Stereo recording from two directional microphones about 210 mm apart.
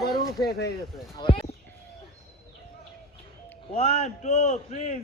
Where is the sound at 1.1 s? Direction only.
20° left (ahead or behind).